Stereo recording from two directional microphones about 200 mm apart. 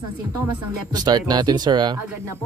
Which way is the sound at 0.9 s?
20° right (ahead or behind).